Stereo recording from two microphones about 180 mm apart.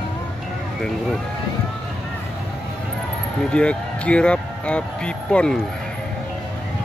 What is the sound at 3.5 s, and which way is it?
Speech, 5° left (ahead or behind).